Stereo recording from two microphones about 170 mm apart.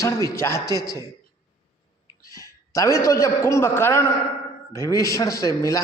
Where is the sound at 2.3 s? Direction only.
20° left (ahead or behind).